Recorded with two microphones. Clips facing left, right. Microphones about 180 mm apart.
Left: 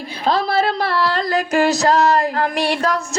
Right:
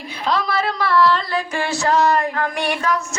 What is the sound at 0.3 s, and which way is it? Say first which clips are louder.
A woman's voice: left 3 dB; 30° left (ahead or behind).